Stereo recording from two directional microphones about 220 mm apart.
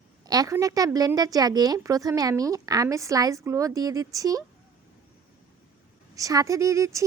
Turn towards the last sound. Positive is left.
turn(degrees=-15)  # may be behind; listen again after turning